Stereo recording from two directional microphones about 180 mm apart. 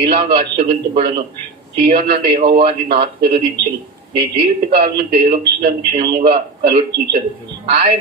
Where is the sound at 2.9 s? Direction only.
30° right (ahead or behind).